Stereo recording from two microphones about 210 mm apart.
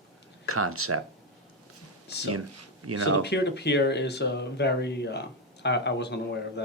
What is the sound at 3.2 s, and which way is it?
Speech, 55° left (ahead or behind).